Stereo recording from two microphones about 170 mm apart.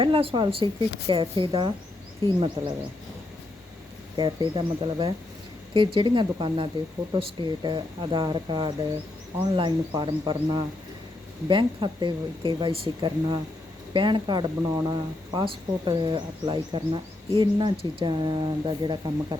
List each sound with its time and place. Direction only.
0.0 s speech: 30° right (ahead or behind)
4.2 s speech: 30° right (ahead or behind)